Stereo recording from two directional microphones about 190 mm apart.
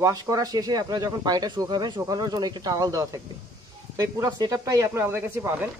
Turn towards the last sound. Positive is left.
turn(degrees=-10)  # may be behind; listen again after turning